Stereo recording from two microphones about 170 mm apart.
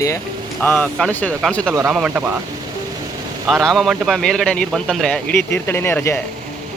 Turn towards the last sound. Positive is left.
turn(degrees=10)  # may be behind; listen again after turning